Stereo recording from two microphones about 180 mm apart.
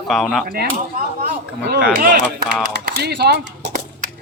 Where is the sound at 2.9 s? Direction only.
65° right (ahead or behind).